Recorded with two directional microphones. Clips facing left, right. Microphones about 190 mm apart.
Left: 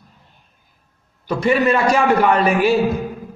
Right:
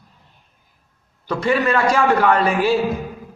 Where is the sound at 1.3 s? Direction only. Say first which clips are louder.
Left 2 dB; 15° left (ahead or behind).